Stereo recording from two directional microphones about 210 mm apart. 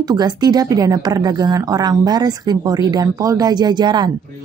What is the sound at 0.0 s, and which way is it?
A woman's voice, 20° right (ahead or behind).